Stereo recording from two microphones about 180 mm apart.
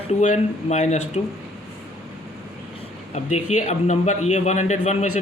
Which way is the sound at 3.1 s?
40° left (ahead or behind).